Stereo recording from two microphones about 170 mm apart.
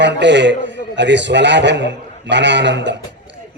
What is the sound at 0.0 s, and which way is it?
A man's voice, 90° right.